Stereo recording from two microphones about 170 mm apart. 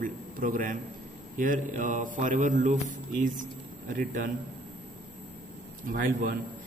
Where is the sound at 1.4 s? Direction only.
50° right (ahead or behind).